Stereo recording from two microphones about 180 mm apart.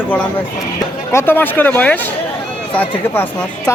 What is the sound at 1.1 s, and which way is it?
Speech, 10° left (ahead or behind).